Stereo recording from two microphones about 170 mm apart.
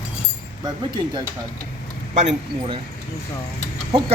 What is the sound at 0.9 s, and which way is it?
Speech, 25° right (ahead or behind).